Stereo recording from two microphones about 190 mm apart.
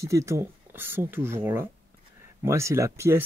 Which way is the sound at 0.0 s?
15° right (ahead or behind).